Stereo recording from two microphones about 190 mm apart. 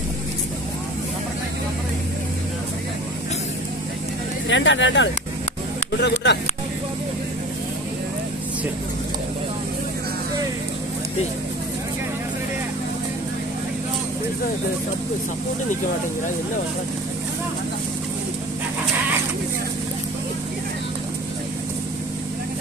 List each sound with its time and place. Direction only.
4.5 s speech: 75° left (ahead or behind)